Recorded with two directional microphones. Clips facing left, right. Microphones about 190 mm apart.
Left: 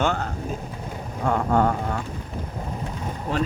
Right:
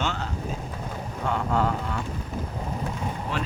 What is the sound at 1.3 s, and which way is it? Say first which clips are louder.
Speech: left 4 dB; 50° left (ahead or behind).